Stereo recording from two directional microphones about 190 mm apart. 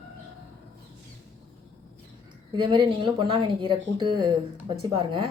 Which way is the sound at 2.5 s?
25° right (ahead or behind).